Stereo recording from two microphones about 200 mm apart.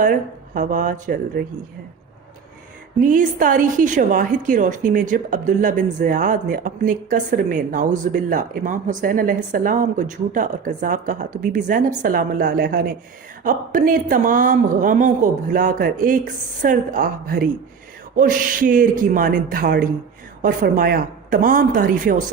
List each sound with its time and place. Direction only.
0.0 s a woman's voice: 40° right (ahead or behind)
3.0 s a woman's voice: 45° right (ahead or behind)